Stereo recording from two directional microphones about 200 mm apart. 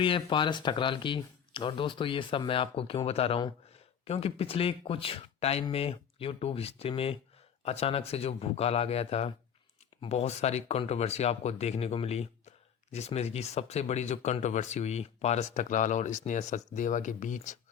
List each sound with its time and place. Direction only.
0.0 s speech: 25° left (ahead or behind)